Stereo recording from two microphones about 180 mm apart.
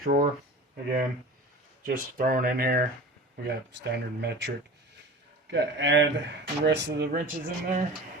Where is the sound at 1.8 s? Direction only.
50° right (ahead or behind).